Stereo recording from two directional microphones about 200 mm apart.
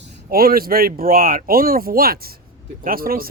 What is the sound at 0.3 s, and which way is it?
Speech, 45° right (ahead or behind).